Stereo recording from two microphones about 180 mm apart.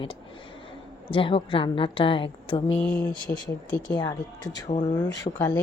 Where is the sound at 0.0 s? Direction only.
30° left (ahead or behind).